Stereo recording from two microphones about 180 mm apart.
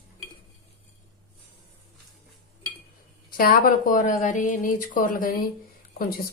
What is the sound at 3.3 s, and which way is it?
A woman's voice, 50° left (ahead or behind).